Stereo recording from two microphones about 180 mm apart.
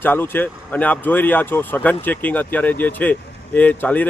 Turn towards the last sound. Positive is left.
turn(degrees=10)  # may be behind; listen again after turning